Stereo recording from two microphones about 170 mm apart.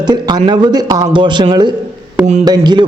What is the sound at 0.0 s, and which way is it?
A man's voice, 25° right (ahead or behind).